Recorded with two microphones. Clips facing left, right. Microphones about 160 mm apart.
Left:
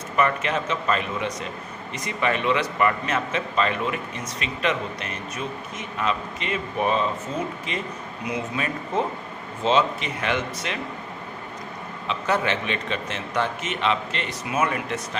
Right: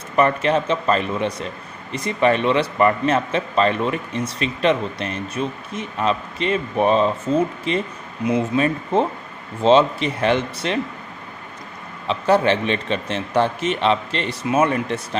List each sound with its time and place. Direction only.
0.1 s a man's voice: 35° right (ahead or behind)
12.1 s a man's voice: 35° right (ahead or behind)